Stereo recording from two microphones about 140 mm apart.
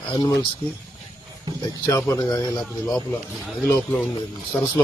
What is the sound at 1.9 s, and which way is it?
Speech, 20° left (ahead or behind).